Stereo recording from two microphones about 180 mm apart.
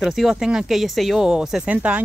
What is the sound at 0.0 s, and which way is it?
Speech, centre (ahead or behind).